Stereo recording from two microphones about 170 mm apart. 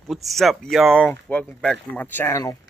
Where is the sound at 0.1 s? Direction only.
Centre (ahead or behind).